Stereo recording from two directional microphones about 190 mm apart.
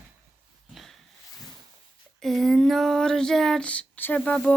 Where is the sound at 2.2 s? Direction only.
Centre (ahead or behind).